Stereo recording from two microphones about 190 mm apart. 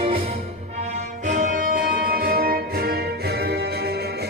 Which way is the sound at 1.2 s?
40° right (ahead or behind).